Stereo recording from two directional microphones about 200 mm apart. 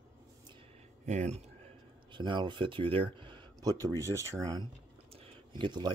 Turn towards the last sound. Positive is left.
turn(degrees=-25)  # may be behind; listen again after turning